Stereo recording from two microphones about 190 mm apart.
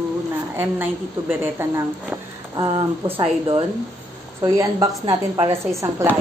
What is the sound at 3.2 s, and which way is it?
Speech, 25° right (ahead or behind).